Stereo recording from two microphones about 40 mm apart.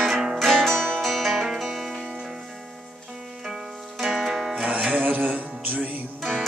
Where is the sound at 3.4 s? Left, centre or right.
Centre.